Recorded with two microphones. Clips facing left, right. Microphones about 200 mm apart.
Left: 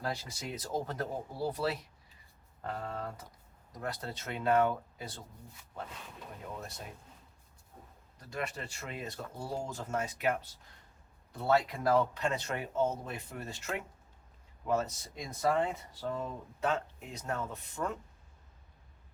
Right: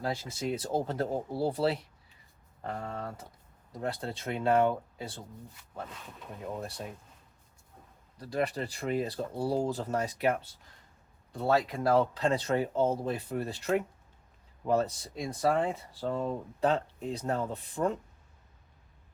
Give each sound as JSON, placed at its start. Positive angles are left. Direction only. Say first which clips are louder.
{"t": 0.0, "sound": "speech", "louder": "right 5 dB", "side_deg": -25}
{"t": 3.7, "sound": "speech", "louder": "right 4 dB", "side_deg": -30}
{"t": 6.6, "sound": "speech", "louder": "right 6 dB", "side_deg": -30}
{"t": 8.2, "sound": "speech", "louder": "right 8 dB", "side_deg": -35}
{"t": 11.5, "sound": "speech", "louder": "right 2 dB", "side_deg": -30}